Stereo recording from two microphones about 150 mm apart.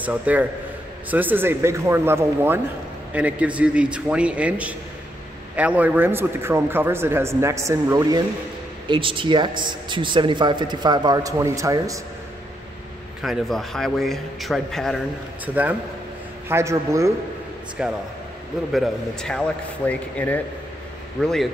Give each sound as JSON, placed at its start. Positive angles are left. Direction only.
{"t": 0.0, "sound": "speech", "side_deg": -10}
{"t": 8.8, "sound": "speech", "side_deg": -35}
{"t": 13.2, "sound": "a man's voice", "side_deg": 0}
{"t": 15.4, "sound": "a man's voice", "side_deg": -10}
{"t": 17.8, "sound": "a man's voice", "side_deg": -5}